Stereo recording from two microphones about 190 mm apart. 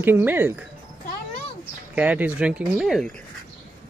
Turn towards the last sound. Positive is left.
turn(degrees=0)  # may be behind; listen again after turning